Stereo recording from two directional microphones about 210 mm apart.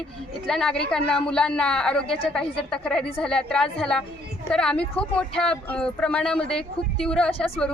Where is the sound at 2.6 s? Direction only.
5° left (ahead or behind).